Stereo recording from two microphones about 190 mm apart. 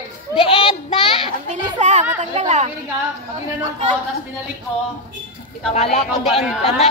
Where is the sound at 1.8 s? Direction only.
40° right (ahead or behind).